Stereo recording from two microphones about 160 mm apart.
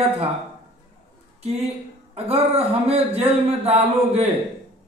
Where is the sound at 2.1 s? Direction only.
40° right (ahead or behind).